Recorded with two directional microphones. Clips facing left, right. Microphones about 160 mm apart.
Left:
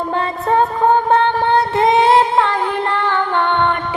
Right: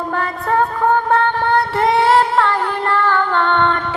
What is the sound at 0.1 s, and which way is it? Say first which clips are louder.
Music: left 2 dB; 25° left (ahead or behind).